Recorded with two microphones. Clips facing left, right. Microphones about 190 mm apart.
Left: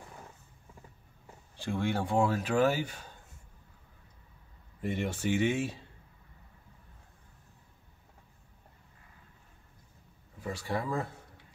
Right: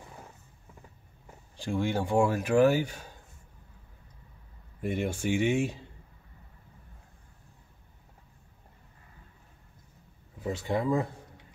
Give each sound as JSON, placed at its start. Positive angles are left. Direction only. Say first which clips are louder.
{"t": 1.6, "sound": "speech", "louder": "right 2 dB", "side_deg": -15}
{"t": 4.8, "sound": "speech", "louder": "right 2 dB", "side_deg": -10}
{"t": 10.4, "sound": "speech", "louder": "right 5 dB", "side_deg": -20}